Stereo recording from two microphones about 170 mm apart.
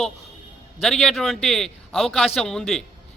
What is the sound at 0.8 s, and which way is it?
A man's voice, 5° left (ahead or behind).